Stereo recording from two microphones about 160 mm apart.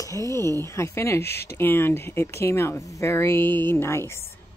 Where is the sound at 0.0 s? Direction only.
20° left (ahead or behind).